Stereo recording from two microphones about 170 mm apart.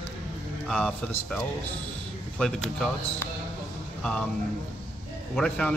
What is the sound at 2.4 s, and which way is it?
Speech, 5° left (ahead or behind).